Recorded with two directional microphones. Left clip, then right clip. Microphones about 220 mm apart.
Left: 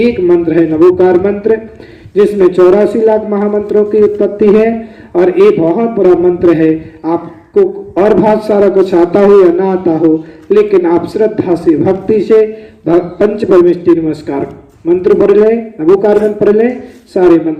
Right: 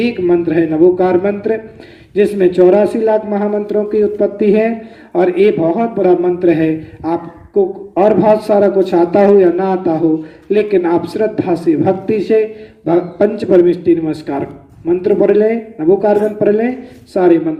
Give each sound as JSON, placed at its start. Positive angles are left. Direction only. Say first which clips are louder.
{"t": 0.0, "sound": "a man's voice", "louder": "left 5 dB", "side_deg": -50}